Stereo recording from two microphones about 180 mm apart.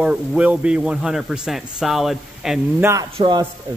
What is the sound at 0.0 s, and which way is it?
Speech, 5° right (ahead or behind).